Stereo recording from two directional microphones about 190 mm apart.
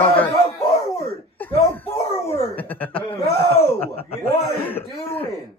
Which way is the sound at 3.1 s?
30° left (ahead or behind).